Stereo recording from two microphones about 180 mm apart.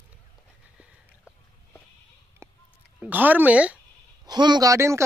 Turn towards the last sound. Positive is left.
turn(degrees=-15)  # may be behind; listen again after turning